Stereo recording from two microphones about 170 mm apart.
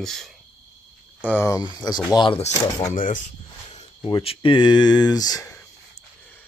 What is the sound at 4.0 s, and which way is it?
Speech, 25° left (ahead or behind).